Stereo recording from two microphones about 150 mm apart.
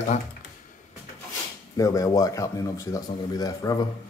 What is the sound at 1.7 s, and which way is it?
Speech, 25° left (ahead or behind).